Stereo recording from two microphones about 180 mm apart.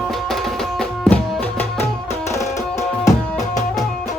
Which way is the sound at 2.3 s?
15° left (ahead or behind).